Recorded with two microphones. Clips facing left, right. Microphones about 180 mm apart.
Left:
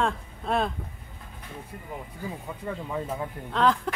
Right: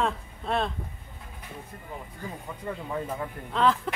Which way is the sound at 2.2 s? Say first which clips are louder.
Left 1 dB; 10° left (ahead or behind).